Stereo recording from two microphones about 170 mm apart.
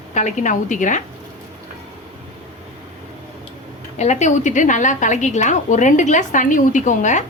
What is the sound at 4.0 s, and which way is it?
A woman's voice, 45° left (ahead or behind).